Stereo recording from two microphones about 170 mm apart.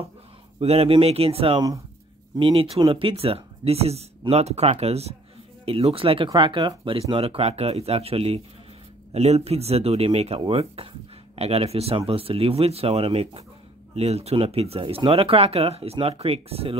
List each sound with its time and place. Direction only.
0.6 s speech: 35° right (ahead or behind)